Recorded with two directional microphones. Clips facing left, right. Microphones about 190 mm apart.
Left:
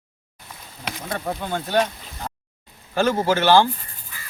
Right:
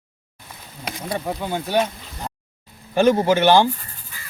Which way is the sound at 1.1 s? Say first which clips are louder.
Right 1 dB; 10° right (ahead or behind).